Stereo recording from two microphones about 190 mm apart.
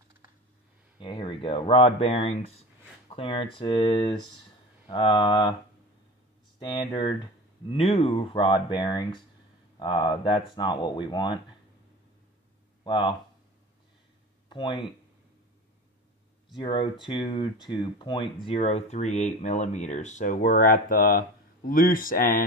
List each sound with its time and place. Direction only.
0.9 s speech: 25° left (ahead or behind)
6.6 s speech: 25° left (ahead or behind)
12.8 s speech: 25° left (ahead or behind)
14.5 s speech: 25° left (ahead or behind)
16.5 s speech: 30° left (ahead or behind); by 22.4 s 50° left (ahead or behind)